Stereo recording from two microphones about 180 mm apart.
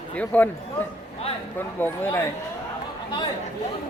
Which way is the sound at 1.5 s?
10° left (ahead or behind).